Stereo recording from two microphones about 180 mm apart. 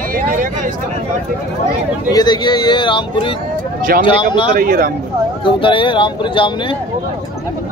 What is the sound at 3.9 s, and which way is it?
Speech, 50° right (ahead or behind).